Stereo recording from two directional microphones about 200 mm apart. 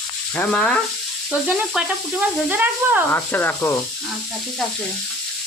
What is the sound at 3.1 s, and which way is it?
Speech, 10° left (ahead or behind).